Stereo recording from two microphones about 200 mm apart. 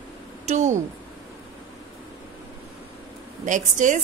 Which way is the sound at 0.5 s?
35° right (ahead or behind).